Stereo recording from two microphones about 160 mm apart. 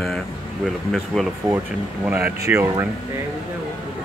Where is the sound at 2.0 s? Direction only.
15° right (ahead or behind).